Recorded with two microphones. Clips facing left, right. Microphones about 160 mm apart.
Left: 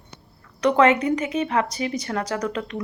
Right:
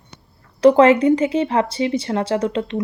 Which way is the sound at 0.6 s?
30° right (ahead or behind).